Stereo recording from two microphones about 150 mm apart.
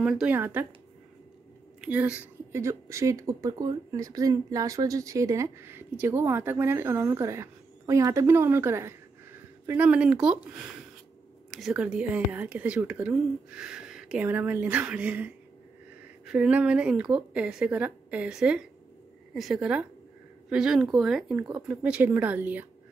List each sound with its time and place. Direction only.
0.0 s speech: 5° right (ahead or behind)
1.8 s a woman's voice: 10° right (ahead or behind)
2.6 s speech: 20° right (ahead or behind)
11.5 s a woman's voice: 5° right (ahead or behind)